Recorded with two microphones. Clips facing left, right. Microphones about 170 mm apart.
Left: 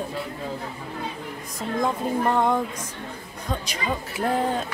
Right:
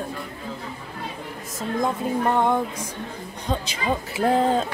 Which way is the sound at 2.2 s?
15° right (ahead or behind).